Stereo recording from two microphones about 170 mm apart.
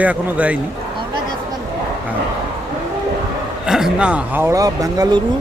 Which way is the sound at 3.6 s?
5° right (ahead or behind).